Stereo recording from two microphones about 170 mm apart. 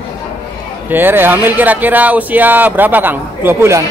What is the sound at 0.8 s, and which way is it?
Speech, 10° right (ahead or behind).